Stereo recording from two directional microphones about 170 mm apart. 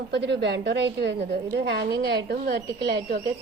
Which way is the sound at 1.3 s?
80° right.